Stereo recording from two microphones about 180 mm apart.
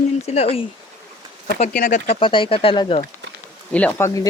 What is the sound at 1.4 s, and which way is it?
Speech, 50° left (ahead or behind).